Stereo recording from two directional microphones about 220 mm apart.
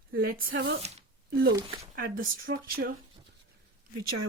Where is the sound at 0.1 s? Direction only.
40° right (ahead or behind).